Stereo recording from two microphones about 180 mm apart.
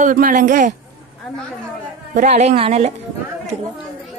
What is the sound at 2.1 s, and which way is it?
Speech, 40° right (ahead or behind).